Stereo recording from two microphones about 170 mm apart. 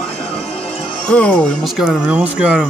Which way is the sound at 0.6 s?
5° left (ahead or behind).